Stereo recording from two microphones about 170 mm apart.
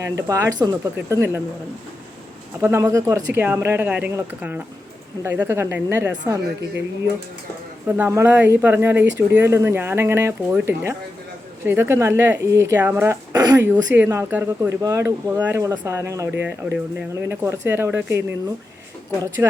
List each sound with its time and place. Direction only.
0.0 s speech: 20° right (ahead or behind)
2.6 s speech: 15° right (ahead or behind)
7.9 s speech: 15° right (ahead or behind)
13.9 s speech: 10° right (ahead or behind)
19.4 s speech: 10° right (ahead or behind)